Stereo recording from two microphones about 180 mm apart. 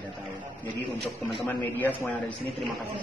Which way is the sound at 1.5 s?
10° left (ahead or behind).